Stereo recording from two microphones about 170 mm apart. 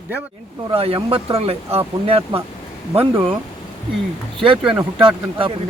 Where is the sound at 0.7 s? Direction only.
35° right (ahead or behind).